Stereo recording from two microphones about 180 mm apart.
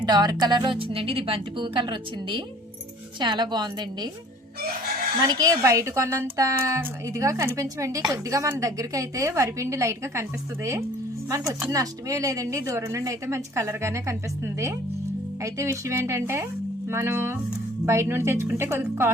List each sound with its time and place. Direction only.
0.0 s speech: 25° right (ahead or behind)
5.3 s a woman's voice: 20° right (ahead or behind)